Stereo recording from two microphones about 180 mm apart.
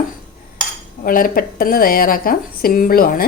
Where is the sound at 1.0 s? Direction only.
50° left (ahead or behind).